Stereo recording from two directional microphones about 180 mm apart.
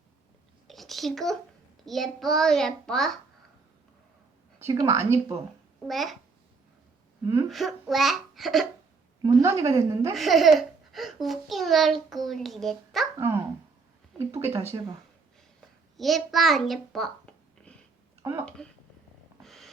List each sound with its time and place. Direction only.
0.7 s a sound: centre (ahead or behind)
1.8 s a child's voice: centre (ahead or behind)
4.6 s a woman's voice: 20° right (ahead or behind)
5.9 s a child's voice: centre (ahead or behind)
7.4 s a child's voice: centre (ahead or behind)
9.2 s a woman's voice: 15° right (ahead or behind)
10.2 s a child's voice: centre (ahead or behind)
13.1 s speech: 15° right (ahead or behind)
14.7 s speech: 25° right (ahead or behind)
16.0 s a child's voice: centre (ahead or behind)
18.2 s a sound: 15° right (ahead or behind)
18.4 s a child's voice: 5° left (ahead or behind)
19.4 s snort: centre (ahead or behind)